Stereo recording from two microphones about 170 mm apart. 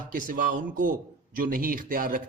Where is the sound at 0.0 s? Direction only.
55° right (ahead or behind).